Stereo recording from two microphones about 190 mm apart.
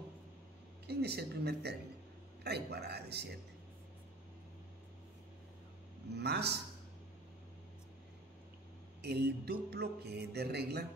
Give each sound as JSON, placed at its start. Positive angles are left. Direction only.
{"t": 0.8, "sound": "mantra", "side_deg": -60}
{"t": 6.1, "sound": "mantra", "side_deg": -60}
{"t": 9.0, "sound": "mantra", "side_deg": -60}